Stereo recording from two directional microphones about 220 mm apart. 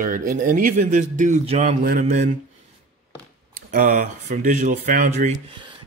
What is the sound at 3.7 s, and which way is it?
A man's voice, 35° right (ahead or behind).